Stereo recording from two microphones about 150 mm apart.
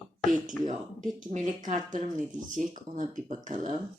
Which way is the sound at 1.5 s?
55° right (ahead or behind).